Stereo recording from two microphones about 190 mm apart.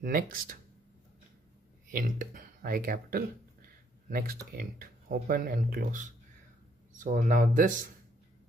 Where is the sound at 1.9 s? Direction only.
45° right (ahead or behind).